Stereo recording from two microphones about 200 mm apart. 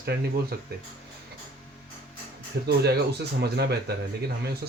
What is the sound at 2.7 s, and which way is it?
A man's voice, 55° right (ahead or behind).